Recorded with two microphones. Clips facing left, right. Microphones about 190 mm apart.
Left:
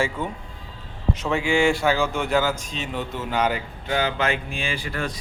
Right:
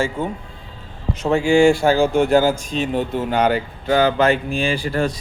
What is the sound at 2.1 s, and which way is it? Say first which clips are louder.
Speech: right 8 dB; 30° right (ahead or behind).